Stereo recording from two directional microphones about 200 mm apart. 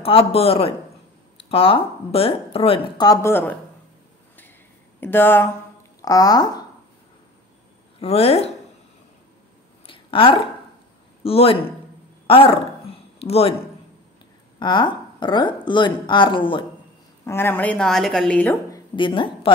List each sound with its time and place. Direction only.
0.0 s a woman's voice: 30° left (ahead or behind); by 3.5 s 10° left (ahead or behind)
5.0 s a woman's voice: 10° left (ahead or behind)
8.0 s a woman's voice: 30° left (ahead or behind)
9.8 s a sound: 25° left (ahead or behind)
11.2 s a woman's voice: 30° left (ahead or behind)
12.3 s a sound: 25° left (ahead or behind)
14.6 s a woman's voice: 25° left (ahead or behind)
17.2 s a woman's voice: 10° left (ahead or behind)